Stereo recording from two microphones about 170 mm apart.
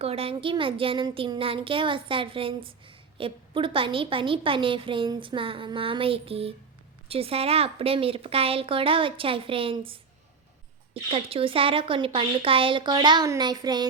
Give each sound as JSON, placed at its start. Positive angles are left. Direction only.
{"t": 0.0, "sound": "speech", "side_deg": -35}
{"t": 11.1, "sound": "speech", "side_deg": -35}